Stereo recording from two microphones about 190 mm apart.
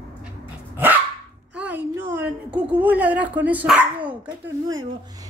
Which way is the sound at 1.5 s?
5° right (ahead or behind).